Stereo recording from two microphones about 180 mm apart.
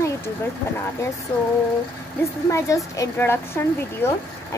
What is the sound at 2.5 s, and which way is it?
Speech, 15° left (ahead or behind).